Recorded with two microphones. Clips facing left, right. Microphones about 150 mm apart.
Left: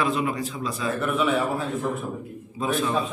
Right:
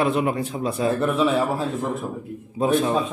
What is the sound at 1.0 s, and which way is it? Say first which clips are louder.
Speech: even; 30° right (ahead or behind).